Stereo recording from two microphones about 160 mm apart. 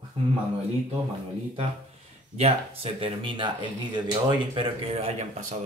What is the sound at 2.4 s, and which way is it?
Speech, 40° right (ahead or behind).